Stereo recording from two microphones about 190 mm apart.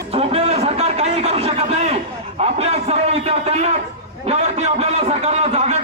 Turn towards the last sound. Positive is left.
turn(degrees=-35)  # may be behind; listen again after turning